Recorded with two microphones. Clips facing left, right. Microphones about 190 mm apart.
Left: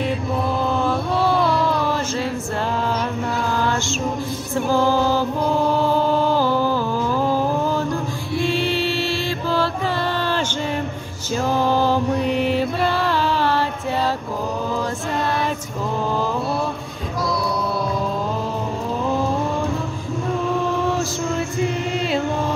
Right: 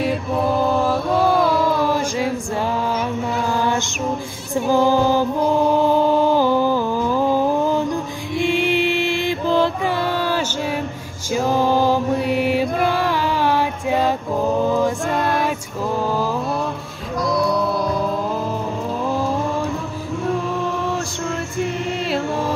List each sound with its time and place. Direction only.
0.8 s mantra: 10° right (ahead or behind)
3.5 s mantra: 15° right (ahead or behind)
4.6 s music: 15° right (ahead or behind)
11.3 s mantra: 15° right (ahead or behind)